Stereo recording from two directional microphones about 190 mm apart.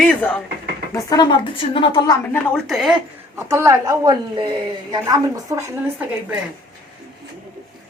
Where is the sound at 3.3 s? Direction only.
15° right (ahead or behind).